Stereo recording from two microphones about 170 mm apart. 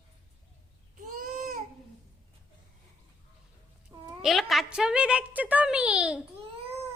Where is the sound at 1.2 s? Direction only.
55° right (ahead or behind).